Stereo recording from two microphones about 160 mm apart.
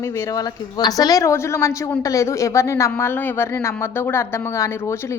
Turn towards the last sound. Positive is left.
turn(degrees=20)  # may be behind; listen again after turning